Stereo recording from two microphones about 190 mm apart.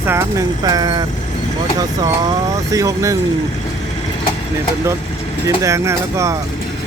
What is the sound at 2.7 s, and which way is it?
Speech, 15° right (ahead or behind).